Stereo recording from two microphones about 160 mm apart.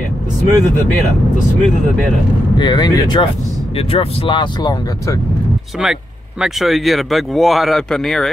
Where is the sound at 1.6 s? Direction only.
5° left (ahead or behind).